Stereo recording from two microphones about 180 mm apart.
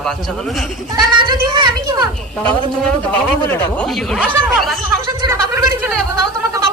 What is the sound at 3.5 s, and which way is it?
A man's voice, 5° left (ahead or behind).